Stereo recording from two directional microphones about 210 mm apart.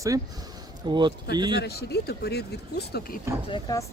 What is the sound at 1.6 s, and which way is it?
Speech, 50° left (ahead or behind).